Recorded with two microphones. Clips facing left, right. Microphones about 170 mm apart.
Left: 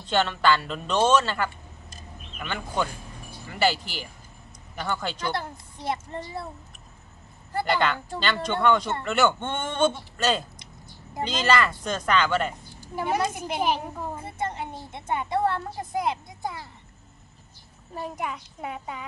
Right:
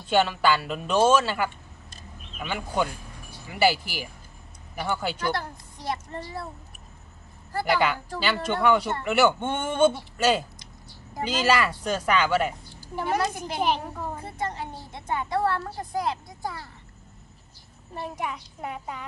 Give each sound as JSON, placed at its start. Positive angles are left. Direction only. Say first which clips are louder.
{"t": 0.0, "sound": "speech", "louder": "right 1 dB", "side_deg": -10}
{"t": 5.3, "sound": "a child's voice", "louder": "even", "side_deg": 25}
{"t": 7.7, "sound": "speech", "louder": "right 2 dB", "side_deg": -10}
{"t": 12.9, "sound": "a child's voice", "louder": "even", "side_deg": 5}
{"t": 14.2, "sound": "a child's voice", "louder": "left 1 dB", "side_deg": 20}
{"t": 17.9, "sound": "a child's voice", "louder": "even", "side_deg": 0}